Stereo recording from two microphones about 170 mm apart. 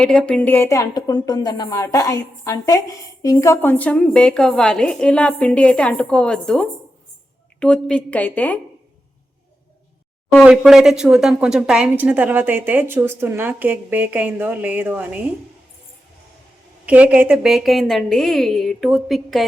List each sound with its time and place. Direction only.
0.0 s a woman's voice: 5° left (ahead or behind)
10.3 s a woman's voice: 5° right (ahead or behind)
16.8 s a woman's voice: 10° right (ahead or behind)